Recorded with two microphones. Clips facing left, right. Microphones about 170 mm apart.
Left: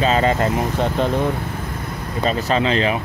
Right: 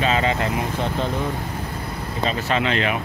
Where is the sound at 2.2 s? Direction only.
35° left (ahead or behind).